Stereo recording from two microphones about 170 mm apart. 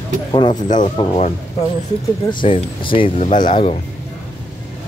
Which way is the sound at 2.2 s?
30° left (ahead or behind).